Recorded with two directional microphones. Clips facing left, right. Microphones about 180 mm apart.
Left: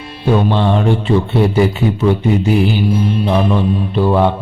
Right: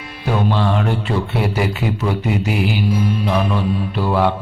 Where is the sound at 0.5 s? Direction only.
25° left (ahead or behind).